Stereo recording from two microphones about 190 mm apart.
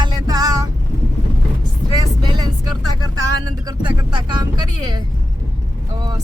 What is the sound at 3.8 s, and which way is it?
Speech, 25° right (ahead or behind).